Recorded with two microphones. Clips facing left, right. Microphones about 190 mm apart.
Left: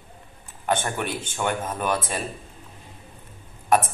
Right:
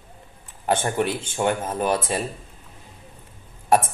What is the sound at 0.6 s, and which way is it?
A man's voice, 30° right (ahead or behind).